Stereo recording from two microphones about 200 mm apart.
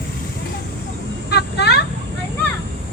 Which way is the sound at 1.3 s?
55° left (ahead or behind).